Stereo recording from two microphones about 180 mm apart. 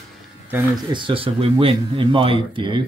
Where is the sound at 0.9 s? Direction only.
30° right (ahead or behind).